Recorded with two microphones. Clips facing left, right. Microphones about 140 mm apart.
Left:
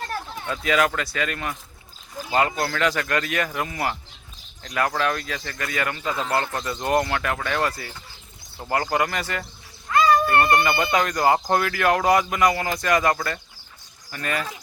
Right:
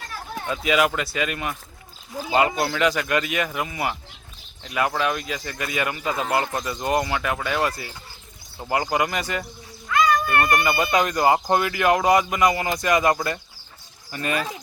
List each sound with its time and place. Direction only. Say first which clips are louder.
0.4 s speech: right 1 dB; 15° right (ahead or behind)
6.7 s speech: left 1 dB; 5° right (ahead or behind)
9.9 s a sound: left 2 dB; 30° left (ahead or behind)
10.9 s speech: right 1 dB; 10° right (ahead or behind)